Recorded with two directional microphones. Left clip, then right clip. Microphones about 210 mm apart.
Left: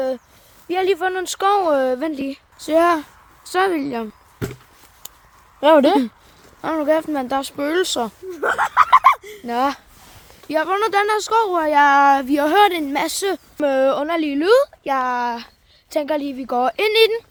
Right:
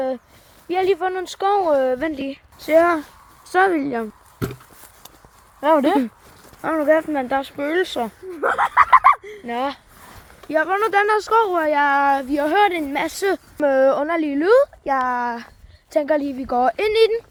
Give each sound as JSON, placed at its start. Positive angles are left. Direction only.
{"t": 0.7, "sound": "speech", "side_deg": 5}
{"t": 3.4, "sound": "a woman's voice", "side_deg": 0}
{"t": 5.5, "sound": "speech", "side_deg": 45}
{"t": 6.6, "sound": "speech", "side_deg": 10}
{"t": 10.5, "sound": "a woman's voice", "side_deg": 15}
{"t": 11.4, "sound": "speech", "side_deg": 20}
{"t": 13.1, "sound": "a woman's voice", "side_deg": 0}
{"t": 13.6, "sound": "a woman's voice", "side_deg": 10}